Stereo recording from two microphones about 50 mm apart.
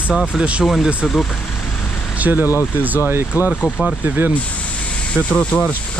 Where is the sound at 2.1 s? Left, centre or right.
Right.